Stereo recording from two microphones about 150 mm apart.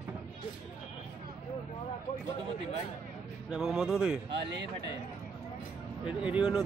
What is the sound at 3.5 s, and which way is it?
Speech, 5° right (ahead or behind).